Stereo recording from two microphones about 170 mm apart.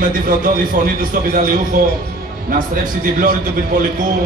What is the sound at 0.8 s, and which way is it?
Speech, 50° right (ahead or behind).